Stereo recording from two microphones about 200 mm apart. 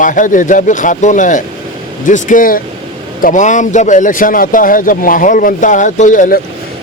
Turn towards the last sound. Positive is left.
turn(degrees=40)  # may be behind; listen again after turning